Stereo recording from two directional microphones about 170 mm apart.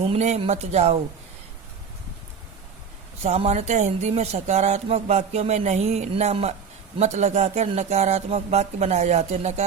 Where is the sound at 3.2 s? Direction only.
40° right (ahead or behind).